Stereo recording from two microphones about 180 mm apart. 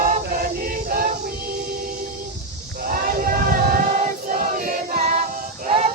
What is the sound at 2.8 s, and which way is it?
Choir, 50° right (ahead or behind).